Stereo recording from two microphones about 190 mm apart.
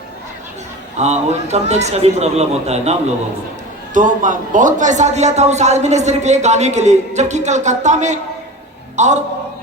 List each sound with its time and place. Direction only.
0.9 s speech: 35° right (ahead or behind)
3.9 s a man's voice: 40° right (ahead or behind)